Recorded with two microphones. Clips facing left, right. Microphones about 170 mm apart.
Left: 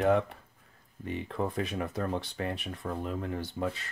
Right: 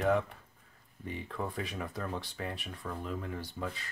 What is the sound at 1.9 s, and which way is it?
Speech, 25° left (ahead or behind).